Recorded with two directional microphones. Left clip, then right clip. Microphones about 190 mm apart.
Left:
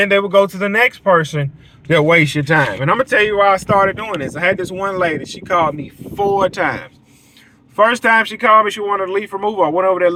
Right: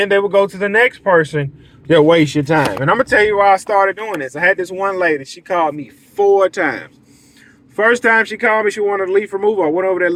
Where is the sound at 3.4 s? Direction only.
Centre (ahead or behind).